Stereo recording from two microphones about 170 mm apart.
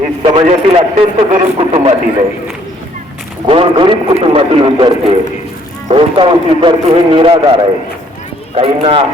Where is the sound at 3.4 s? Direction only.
35° right (ahead or behind).